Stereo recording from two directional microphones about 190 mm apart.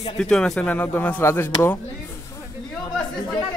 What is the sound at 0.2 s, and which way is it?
A man's voice, 5° left (ahead or behind).